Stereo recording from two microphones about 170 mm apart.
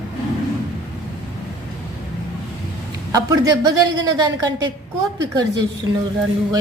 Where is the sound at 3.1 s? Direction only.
25° right (ahead or behind).